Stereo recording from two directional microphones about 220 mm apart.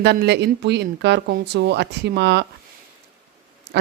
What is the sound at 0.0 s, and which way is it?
A woman's voice, 50° right (ahead or behind).